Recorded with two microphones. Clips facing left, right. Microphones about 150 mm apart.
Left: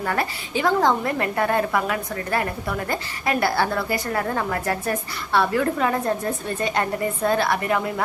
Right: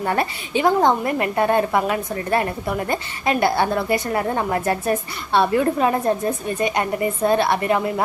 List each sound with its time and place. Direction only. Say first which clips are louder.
0.0 s a woman's voice: right 3 dB; 25° right (ahead or behind)